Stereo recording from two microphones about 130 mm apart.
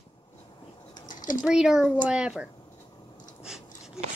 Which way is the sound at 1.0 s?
85° left.